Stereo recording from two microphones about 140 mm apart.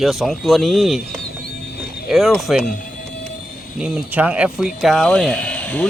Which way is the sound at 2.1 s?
Centre (ahead or behind).